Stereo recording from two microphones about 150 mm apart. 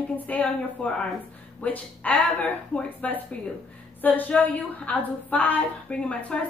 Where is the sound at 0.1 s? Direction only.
10° left (ahead or behind).